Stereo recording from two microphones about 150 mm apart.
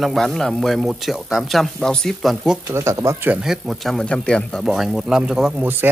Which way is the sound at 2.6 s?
20° right (ahead or behind).